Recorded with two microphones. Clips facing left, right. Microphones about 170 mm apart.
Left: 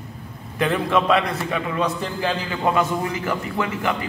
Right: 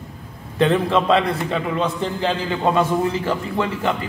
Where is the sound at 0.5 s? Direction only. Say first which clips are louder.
Right 3 dB; 30° right (ahead or behind).